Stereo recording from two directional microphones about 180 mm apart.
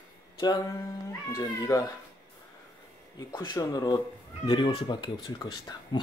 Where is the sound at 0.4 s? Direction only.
25° left (ahead or behind).